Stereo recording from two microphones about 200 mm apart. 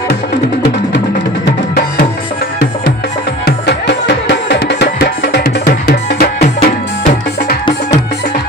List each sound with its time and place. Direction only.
3.4 s music: 55° left (ahead or behind)